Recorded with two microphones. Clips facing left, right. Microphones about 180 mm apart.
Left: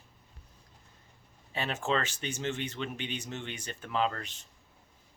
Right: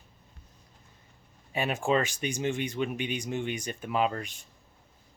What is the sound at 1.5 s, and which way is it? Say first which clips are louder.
Speech: right 5 dB; 10° right (ahead or behind).